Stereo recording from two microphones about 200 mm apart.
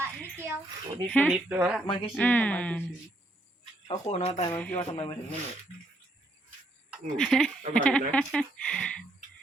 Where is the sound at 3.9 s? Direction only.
30° left (ahead or behind).